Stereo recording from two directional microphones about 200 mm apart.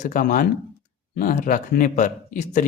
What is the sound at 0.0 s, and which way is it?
Speech, 45° left (ahead or behind).